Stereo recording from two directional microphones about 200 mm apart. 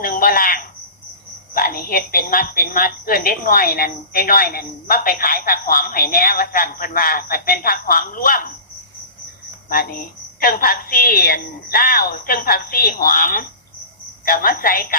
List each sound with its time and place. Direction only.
0.0 s a sound: 45° left (ahead or behind)
1.5 s a woman's voice: 45° left (ahead or behind)
9.6 s a woman's voice: 45° left (ahead or behind)